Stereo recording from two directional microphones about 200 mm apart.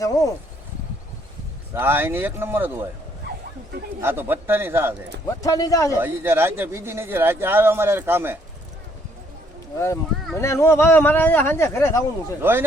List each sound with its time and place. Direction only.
0.0 s speech: 15° left (ahead or behind)
1.7 s speech: 10° right (ahead or behind)
4.0 s speech: 10° right (ahead or behind)
5.4 s speech: 15° left (ahead or behind)
6.0 s speech: 10° right (ahead or behind)
9.7 s speech: 15° left (ahead or behind)
12.4 s speech: 10° right (ahead or behind)